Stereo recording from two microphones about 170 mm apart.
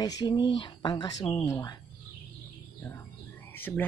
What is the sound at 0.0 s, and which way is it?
Speech, 25° left (ahead or behind).